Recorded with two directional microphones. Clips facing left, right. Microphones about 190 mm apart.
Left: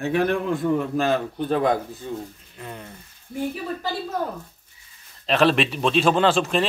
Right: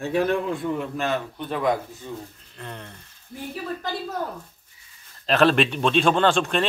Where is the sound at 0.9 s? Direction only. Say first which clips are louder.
Left 4 dB; 35° left (ahead or behind).